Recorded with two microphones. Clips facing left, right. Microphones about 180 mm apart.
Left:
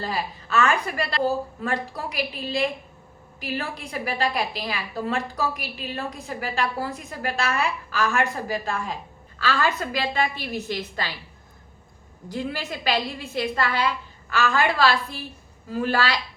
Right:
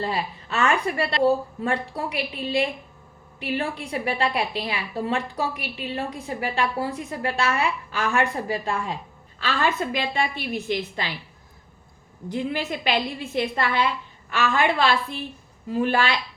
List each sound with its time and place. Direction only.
0.0 s a woman's voice: 25° right (ahead or behind)
12.3 s a woman's voice: 20° right (ahead or behind)